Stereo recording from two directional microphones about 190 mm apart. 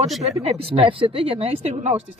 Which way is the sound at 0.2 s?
35° right (ahead or behind).